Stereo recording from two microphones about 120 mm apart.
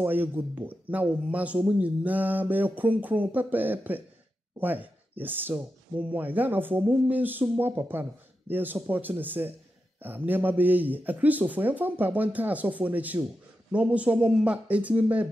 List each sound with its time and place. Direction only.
0.0 s speech: 15° right (ahead or behind)